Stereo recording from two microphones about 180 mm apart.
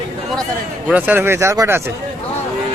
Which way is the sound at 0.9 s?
10° right (ahead or behind).